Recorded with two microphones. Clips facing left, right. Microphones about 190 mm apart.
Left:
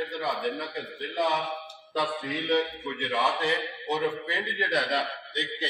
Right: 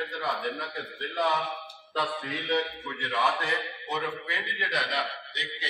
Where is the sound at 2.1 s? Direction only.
15° left (ahead or behind).